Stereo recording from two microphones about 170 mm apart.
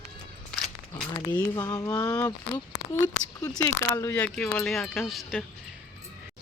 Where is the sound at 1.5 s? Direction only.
20° left (ahead or behind).